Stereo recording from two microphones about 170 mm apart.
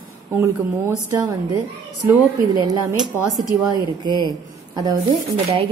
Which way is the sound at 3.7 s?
25° right (ahead or behind).